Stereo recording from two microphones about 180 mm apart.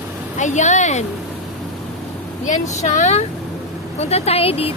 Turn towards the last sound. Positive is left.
turn(degrees=30)  # may be behind; listen again after turning